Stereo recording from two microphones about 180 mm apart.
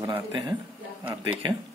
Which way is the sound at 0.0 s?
25° right (ahead or behind).